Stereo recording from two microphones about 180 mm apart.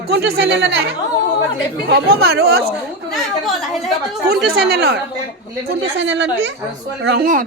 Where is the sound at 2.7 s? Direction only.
Centre (ahead or behind).